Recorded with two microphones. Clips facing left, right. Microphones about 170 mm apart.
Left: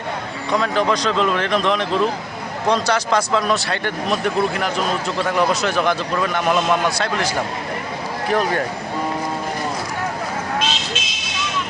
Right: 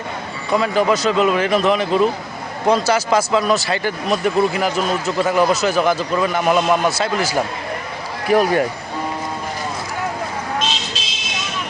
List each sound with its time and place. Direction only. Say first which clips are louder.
0.5 s speech: right 2 dB; 5° right (ahead or behind)
11.0 s vehicle: left 1 dB; 35° right (ahead or behind)